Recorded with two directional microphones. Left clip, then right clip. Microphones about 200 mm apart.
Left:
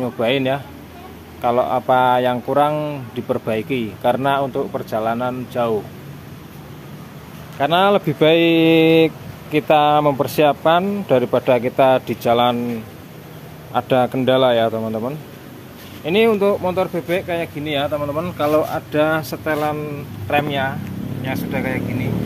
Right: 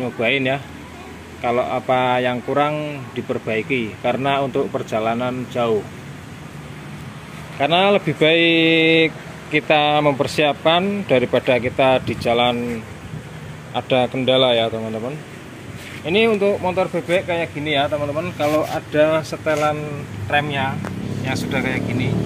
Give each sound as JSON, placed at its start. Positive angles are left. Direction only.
{"t": 0.0, "sound": "speech", "side_deg": 10}
{"t": 4.6, "sound": "speech", "side_deg": -5}
{"t": 7.5, "sound": "speech", "side_deg": 5}
{"t": 13.7, "sound": "speech", "side_deg": 20}
{"t": 21.3, "sound": "speech", "side_deg": 5}